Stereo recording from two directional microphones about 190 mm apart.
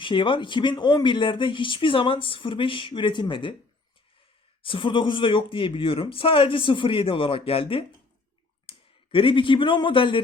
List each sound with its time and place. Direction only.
0.0 s speech: 25° left (ahead or behind)
4.6 s speech: 25° left (ahead or behind)
8.7 s clicking: 30° left (ahead or behind)
9.1 s speech: 25° left (ahead or behind)